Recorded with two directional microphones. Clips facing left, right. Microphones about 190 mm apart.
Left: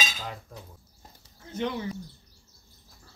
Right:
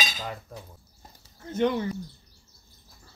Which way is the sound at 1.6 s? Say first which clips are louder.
Right 6 dB; 55° right (ahead or behind).